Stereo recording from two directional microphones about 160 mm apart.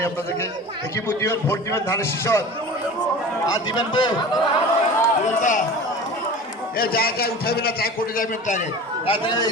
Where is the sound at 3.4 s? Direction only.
30° left (ahead or behind).